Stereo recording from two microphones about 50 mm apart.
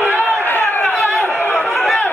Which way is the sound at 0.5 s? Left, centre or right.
Left.